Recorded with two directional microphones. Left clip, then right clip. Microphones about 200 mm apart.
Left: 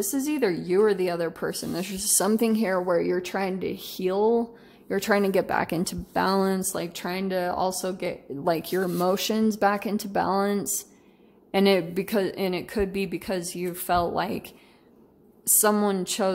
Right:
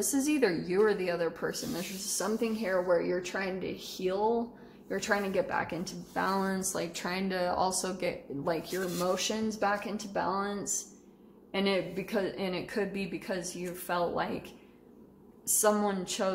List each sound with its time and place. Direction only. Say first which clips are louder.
0.0 s a woman's voice: left 3 dB; 30° left (ahead or behind)
8.5 s a woman's voice: left 8 dB; 60° left (ahead or behind)
15.6 s a woman's voice: left 4 dB; 50° left (ahead or behind)